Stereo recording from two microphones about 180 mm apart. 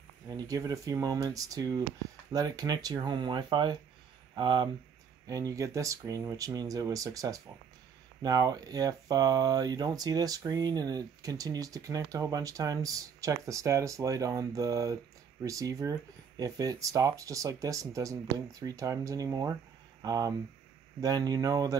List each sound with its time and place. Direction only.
0.3 s speech: 20° right (ahead or behind)